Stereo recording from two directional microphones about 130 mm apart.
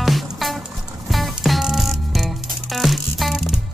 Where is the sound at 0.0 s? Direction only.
Centre (ahead or behind).